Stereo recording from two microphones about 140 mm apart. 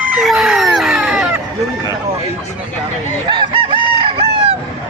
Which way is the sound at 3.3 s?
35° right (ahead or behind).